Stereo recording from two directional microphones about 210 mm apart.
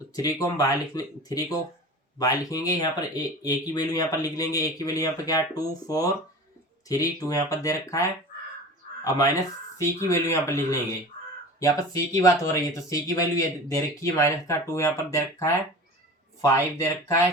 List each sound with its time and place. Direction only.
0.1 s speech: 15° left (ahead or behind)
9.0 s speech: 15° left (ahead or behind)